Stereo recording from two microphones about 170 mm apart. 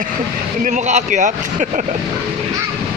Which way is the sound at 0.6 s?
45° right (ahead or behind).